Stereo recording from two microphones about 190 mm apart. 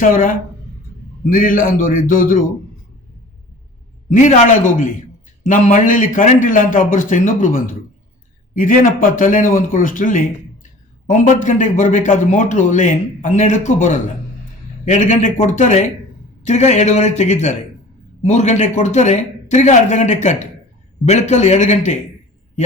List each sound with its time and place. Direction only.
0.0 s speech: 45° left (ahead or behind)
4.1 s speech: 45° left (ahead or behind)